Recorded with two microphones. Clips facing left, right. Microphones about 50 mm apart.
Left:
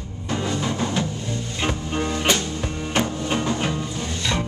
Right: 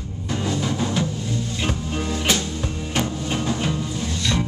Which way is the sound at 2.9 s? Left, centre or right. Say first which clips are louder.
Left 2 dB; centre.